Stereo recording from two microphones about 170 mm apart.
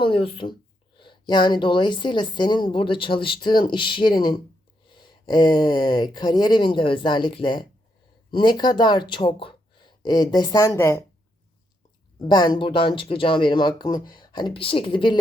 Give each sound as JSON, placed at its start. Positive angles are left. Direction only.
{"t": 0.0, "sound": "a woman's voice", "side_deg": 30}
{"t": 12.2, "sound": "a woman's voice", "side_deg": 25}